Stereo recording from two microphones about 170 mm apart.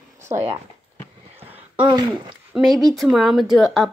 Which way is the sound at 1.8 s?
25° right (ahead or behind).